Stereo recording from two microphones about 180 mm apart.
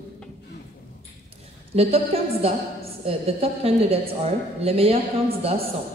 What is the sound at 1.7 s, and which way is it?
A woman's voice, 35° right (ahead or behind).